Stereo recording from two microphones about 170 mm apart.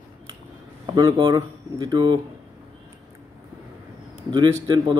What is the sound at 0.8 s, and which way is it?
Speech, 25° right (ahead or behind).